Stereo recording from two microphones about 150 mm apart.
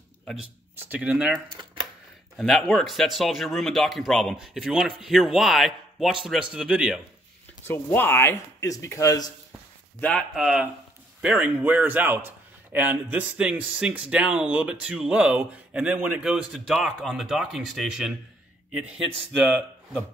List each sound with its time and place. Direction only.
0.7 s speech: 10° right (ahead or behind)
2.3 s speech: centre (ahead or behind)
7.6 s speech: 15° left (ahead or behind)
9.9 s a man's voice: 10° left (ahead or behind)
10.3 s speech: 5° right (ahead or behind)